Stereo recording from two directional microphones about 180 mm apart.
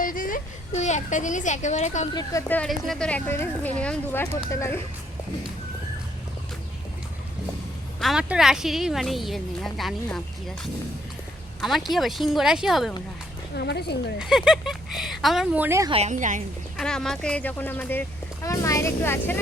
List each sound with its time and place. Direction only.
0.0 s a woman's voice: 50° left (ahead or behind)
2.5 s speech: 5° left (ahead or behind)
8.0 s a woman's voice: 5° right (ahead or behind)
13.6 s speech: 65° left (ahead or behind)
14.2 s a woman's voice: 5° right (ahead or behind)
15.9 s a woman's voice: 40° right (ahead or behind)
16.7 s a woman's voice: 5° left (ahead or behind)